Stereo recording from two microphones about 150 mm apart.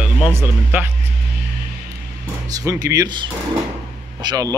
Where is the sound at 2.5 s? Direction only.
25° right (ahead or behind).